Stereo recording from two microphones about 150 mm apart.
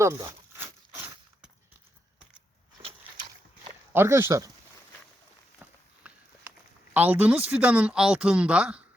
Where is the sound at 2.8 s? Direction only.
30° right (ahead or behind).